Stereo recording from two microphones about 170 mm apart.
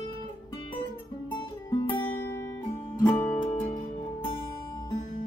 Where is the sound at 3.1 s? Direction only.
10° left (ahead or behind).